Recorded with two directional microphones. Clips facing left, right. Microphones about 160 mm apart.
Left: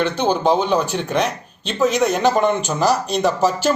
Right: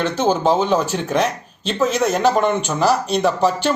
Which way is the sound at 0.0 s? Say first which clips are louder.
Even; 5° right (ahead or behind).